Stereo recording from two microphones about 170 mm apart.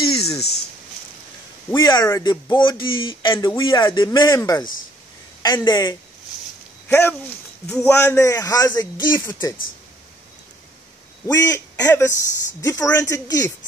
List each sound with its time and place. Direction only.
0.1 s a sound: 35° left (ahead or behind)
1.8 s speech: 25° left (ahead or behind)
2.5 s speech: 30° left (ahead or behind)
6.9 s a man's voice: 15° left (ahead or behind)
11.2 s a man's voice: 20° left (ahead or behind)